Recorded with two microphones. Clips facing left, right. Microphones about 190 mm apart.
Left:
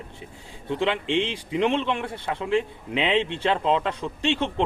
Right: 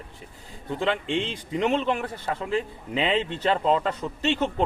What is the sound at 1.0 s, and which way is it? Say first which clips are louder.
Speech: left 3 dB; 50° right (ahead or behind).